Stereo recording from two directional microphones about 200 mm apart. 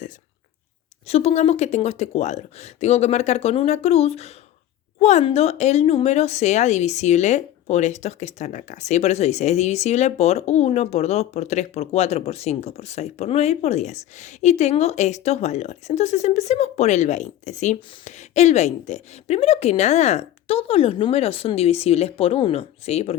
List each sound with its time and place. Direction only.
1.0 s speech: 30° left (ahead or behind)